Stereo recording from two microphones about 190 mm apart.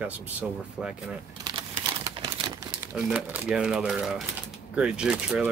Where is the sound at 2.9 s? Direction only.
5° right (ahead or behind).